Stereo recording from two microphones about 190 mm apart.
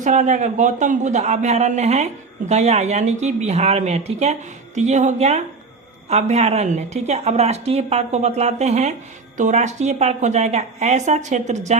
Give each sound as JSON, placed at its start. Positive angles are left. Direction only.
{"t": 0.0, "sound": "speech", "side_deg": -40}